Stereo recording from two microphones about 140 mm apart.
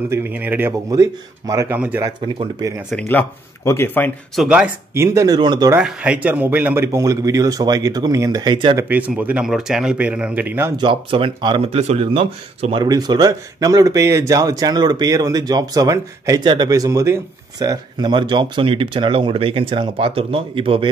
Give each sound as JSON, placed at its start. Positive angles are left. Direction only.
{"t": 0.1, "sound": "speech", "side_deg": -15}
{"t": 3.1, "sound": "speech", "side_deg": 15}
{"t": 4.4, "sound": "speech", "side_deg": -10}
{"t": 4.9, "sound": "a man's voice", "side_deg": -20}
{"t": 5.8, "sound": "a man's voice", "side_deg": -10}
{"t": 8.8, "sound": "speech", "side_deg": -10}
{"t": 10.8, "sound": "speech", "side_deg": -40}